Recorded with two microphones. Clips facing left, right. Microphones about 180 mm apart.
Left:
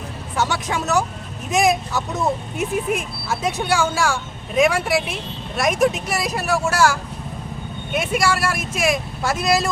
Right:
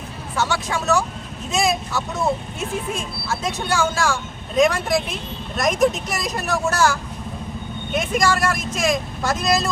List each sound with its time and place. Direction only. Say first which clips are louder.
0.3 s speech: even; 15° left (ahead or behind)
7.9 s speech: even; 5° left (ahead or behind)